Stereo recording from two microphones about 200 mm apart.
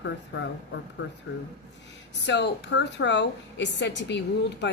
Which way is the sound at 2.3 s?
60° left (ahead or behind).